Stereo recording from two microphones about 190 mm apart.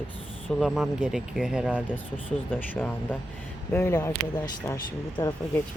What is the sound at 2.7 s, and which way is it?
Speech, 10° left (ahead or behind).